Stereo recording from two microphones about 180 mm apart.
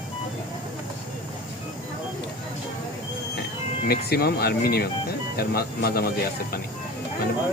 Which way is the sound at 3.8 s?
60° left (ahead or behind).